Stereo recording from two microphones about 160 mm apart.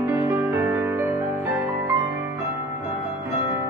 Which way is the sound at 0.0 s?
15° right (ahead or behind).